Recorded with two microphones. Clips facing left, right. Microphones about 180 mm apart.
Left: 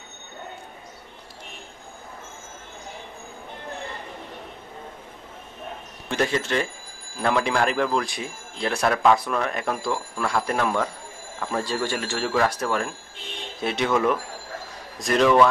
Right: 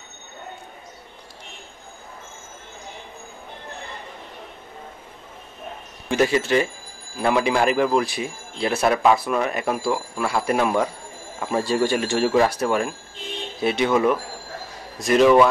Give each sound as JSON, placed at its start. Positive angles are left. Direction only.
{"t": 6.0, "sound": "speech", "side_deg": -5}